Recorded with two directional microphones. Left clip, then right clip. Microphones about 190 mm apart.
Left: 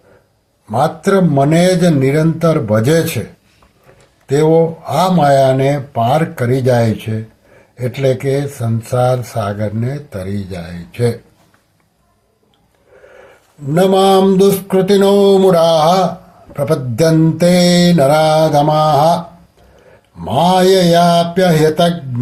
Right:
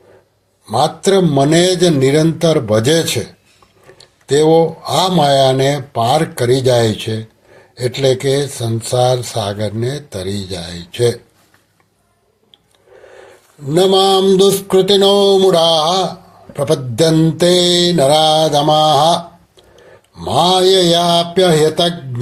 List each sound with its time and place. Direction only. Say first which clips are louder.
0.8 s speech: even; 15° right (ahead or behind)
4.3 s speech: right 1 dB; 15° right (ahead or behind)
13.8 s speech: left 1 dB; 30° right (ahead or behind)
20.2 s speech: even; 25° right (ahead or behind)